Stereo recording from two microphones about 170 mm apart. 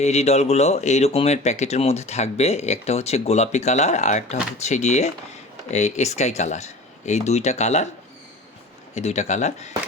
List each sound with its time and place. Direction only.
0.0 s speech: 40° left (ahead or behind)
9.0 s speech: 40° left (ahead or behind)